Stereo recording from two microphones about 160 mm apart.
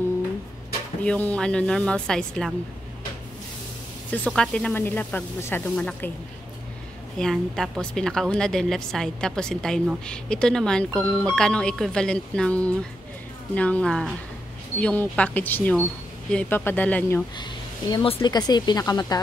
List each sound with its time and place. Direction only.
1.0 s a woman's voice: 10° left (ahead or behind)
4.1 s speech: 5° left (ahead or behind)
7.2 s a woman's voice: 5° left (ahead or behind)
18.0 s speech: 35° left (ahead or behind)
18.3 s speech: 25° left (ahead or behind)